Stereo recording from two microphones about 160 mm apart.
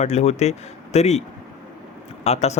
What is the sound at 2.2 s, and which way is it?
Speech, 45° left (ahead or behind).